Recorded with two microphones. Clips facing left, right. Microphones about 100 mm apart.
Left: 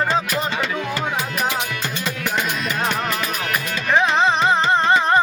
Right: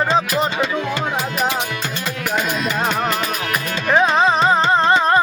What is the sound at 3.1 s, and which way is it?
Music, 25° right (ahead or behind).